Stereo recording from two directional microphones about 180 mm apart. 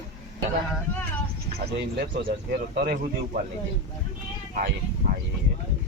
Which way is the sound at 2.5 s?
55° right (ahead or behind).